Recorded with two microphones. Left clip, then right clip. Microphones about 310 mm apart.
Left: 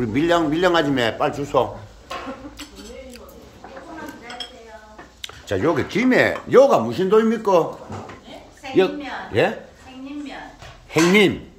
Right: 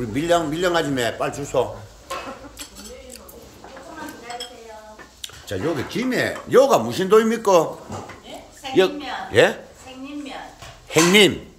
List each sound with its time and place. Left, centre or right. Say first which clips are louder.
0.0 s speech: left 1 dB; centre
5.2 s speech: left 5 dB; centre
8.7 s a man's voice: even; centre
10.9 s speech: right 1 dB; centre